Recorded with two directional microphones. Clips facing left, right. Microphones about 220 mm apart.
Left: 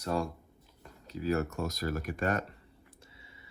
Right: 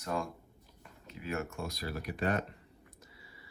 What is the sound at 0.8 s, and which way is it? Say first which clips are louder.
Speech: left 9 dB; 35° left (ahead or behind).